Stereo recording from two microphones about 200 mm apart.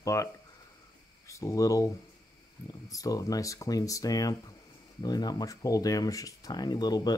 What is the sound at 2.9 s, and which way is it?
Speech, 15° left (ahead or behind).